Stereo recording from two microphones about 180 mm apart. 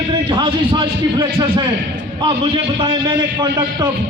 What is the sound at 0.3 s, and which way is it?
A man's voice, 25° right (ahead or behind).